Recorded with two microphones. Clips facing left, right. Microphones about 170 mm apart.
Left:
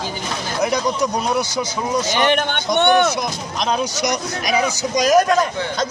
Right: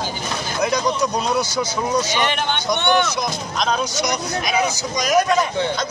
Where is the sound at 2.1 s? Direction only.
50° left (ahead or behind).